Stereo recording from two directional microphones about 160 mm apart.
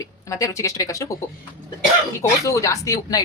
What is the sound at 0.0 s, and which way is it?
A woman's voice, 20° left (ahead or behind).